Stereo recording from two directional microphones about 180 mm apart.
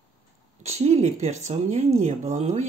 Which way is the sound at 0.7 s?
40° right (ahead or behind).